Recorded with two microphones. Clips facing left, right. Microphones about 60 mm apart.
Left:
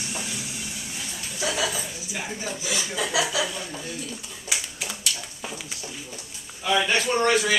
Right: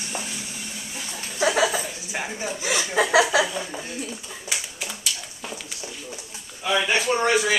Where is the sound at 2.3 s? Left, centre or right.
Centre.